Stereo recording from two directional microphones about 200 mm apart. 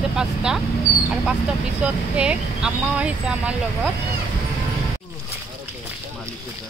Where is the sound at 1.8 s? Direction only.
5° right (ahead or behind).